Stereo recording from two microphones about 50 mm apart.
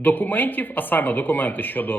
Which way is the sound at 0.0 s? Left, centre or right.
Left.